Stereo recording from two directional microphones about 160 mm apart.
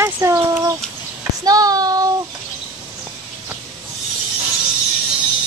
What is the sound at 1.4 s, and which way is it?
Speech, 25° right (ahead or behind).